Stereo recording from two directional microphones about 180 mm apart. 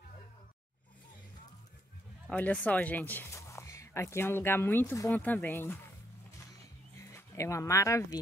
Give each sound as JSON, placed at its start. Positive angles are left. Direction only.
{"t": 2.2, "sound": "speech", "side_deg": 10}
{"t": 7.1, "sound": "speech", "side_deg": 15}